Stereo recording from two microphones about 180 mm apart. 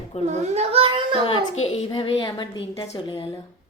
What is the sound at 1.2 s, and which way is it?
A child's voice, 35° left (ahead or behind).